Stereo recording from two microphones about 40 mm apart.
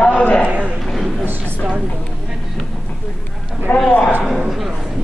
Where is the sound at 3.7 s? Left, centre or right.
Left.